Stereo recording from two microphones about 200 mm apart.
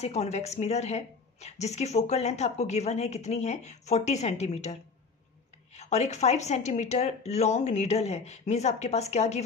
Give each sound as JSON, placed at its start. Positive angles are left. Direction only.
{"t": 0.0, "sound": "speech", "side_deg": 35}
{"t": 5.8, "sound": "speech", "side_deg": 35}